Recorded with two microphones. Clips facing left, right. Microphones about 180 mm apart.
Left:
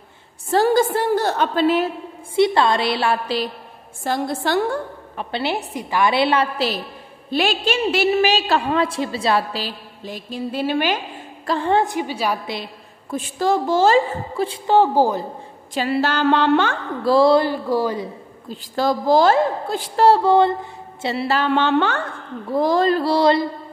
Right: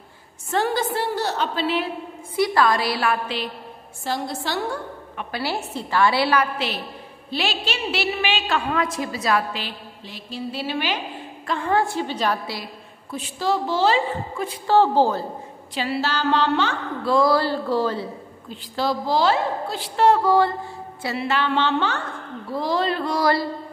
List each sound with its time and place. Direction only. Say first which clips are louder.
0.5 s a woman's voice: left 6 dB; 40° left (ahead or behind)
2.3 s a woman's voice: left 3 dB; 25° left (ahead or behind)
4.0 s a woman's voice: left 5 dB; 50° left (ahead or behind)
5.1 s a woman's voice: left 4 dB; 25° left (ahead or behind)
7.2 s a woman's voice: left 6 dB; 50° left (ahead or behind)
11.4 s a woman's voice: left 3 dB; 30° left (ahead or behind); by 12.5 s 10° left (ahead or behind)
13.1 s a woman's voice: left 4 dB; 50° left (ahead or behind)
14.7 s a woman's voice: left 1 dB; 15° left (ahead or behind)
15.7 s a sound: left 4 dB; 50° left (ahead or behind)
17.0 s mantra: left 4 dB; 35° left (ahead or behind)
17.3 s a woman's voice: left 4 dB; 15° left (ahead or behind)
18.5 s a woman's voice: left 4 dB; 45° left (ahead or behind)
20.1 s a woman's voice: left 3 dB; 25° left (ahead or behind); by 22.0 s 55° left (ahead or behind)
22.5 s mantra: left 6 dB; 50° left (ahead or behind); by 23.4 s 25° left (ahead or behind)